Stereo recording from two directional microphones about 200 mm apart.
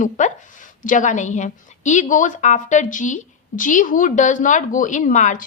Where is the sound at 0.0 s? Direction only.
40° left (ahead or behind).